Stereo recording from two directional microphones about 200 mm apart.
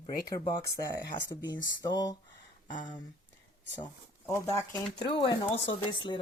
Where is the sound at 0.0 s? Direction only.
20° left (ahead or behind).